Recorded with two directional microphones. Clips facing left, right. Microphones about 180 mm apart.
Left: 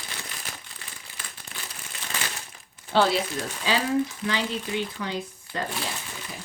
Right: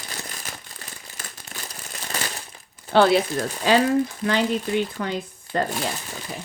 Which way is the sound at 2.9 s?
60° right (ahead or behind).